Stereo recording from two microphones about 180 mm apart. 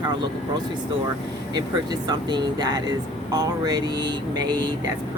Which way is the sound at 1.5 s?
20° right (ahead or behind).